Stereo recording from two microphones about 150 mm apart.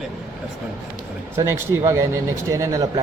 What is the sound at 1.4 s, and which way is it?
Speech, 15° right (ahead or behind).